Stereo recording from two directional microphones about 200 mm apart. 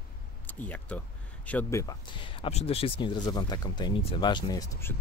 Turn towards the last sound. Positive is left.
turn(degrees=15)  # may be behind; listen again after turning